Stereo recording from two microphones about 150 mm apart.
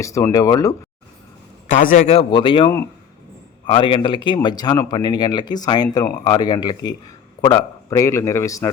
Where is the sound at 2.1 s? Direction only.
35° left (ahead or behind).